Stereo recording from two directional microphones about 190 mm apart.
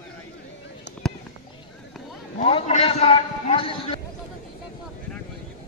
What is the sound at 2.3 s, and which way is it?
A man's voice, 35° left (ahead or behind).